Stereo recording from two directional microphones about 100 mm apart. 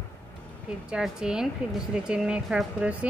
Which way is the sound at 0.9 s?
5° right (ahead or behind).